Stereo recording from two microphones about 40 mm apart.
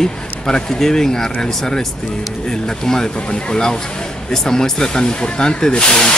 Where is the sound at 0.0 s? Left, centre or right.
Centre.